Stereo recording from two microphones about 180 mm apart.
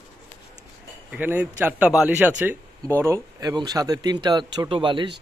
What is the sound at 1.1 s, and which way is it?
Speech, 10° right (ahead or behind).